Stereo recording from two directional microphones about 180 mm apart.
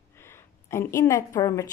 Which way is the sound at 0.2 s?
15° left (ahead or behind).